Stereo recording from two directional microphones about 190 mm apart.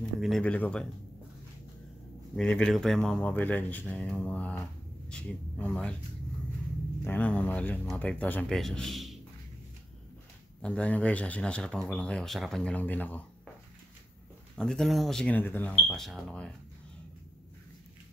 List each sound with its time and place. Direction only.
0.2 s speech: 5° left (ahead or behind)
2.3 s speech: 5° left (ahead or behind)
7.1 s speech: 10° left (ahead or behind)
10.6 s speech: 5° left (ahead or behind)
14.5 s speech: 5° left (ahead or behind)